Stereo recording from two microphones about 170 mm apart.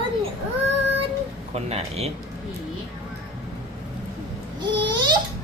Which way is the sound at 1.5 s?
40° right (ahead or behind).